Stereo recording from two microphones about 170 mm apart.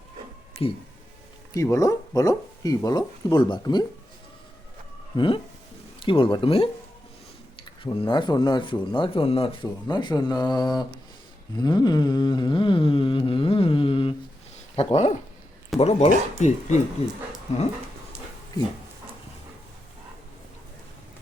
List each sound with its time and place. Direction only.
0.6 s speech: 35° left (ahead or behind)
1.5 s speech: 20° left (ahead or behind)
5.1 s speech: 30° left (ahead or behind)
7.9 s speech: 30° left (ahead or behind)
11.6 s a sound: 25° left (ahead or behind)
14.8 s speech: 40° left (ahead or behind)